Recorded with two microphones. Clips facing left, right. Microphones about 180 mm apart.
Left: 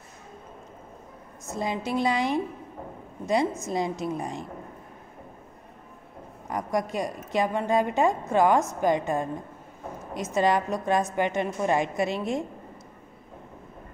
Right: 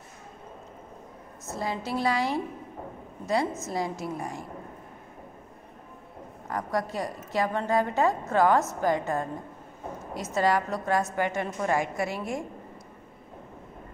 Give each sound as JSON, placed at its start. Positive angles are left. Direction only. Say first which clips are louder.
{"t": 1.5, "sound": "a woman's voice", "louder": "left 2 dB", "side_deg": 20}
{"t": 6.5, "sound": "a woman's voice", "louder": "left 2 dB", "side_deg": 15}